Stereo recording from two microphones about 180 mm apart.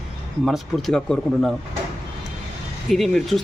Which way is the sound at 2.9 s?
Centre (ahead or behind).